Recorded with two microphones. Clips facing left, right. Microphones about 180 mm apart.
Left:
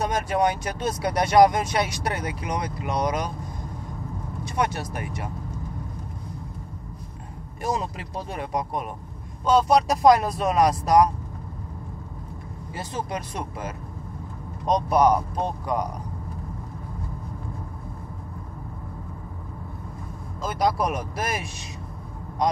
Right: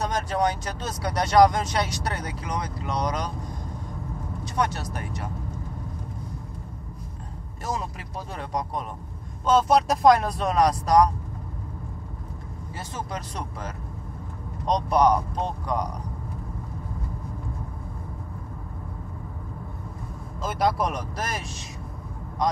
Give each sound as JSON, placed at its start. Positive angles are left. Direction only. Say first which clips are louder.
{"t": 0.0, "sound": "speech", "louder": "left 2 dB", "side_deg": 10}
{"t": 4.6, "sound": "speech", "louder": "left 1 dB", "side_deg": 10}
{"t": 7.6, "sound": "speech", "louder": "left 4 dB", "side_deg": 20}
{"t": 9.5, "sound": "speech", "louder": "left 1 dB", "side_deg": 0}
{"t": 12.7, "sound": "speech", "louder": "left 4 dB", "side_deg": 15}
{"t": 20.4, "sound": "speech", "louder": "left 1 dB", "side_deg": 0}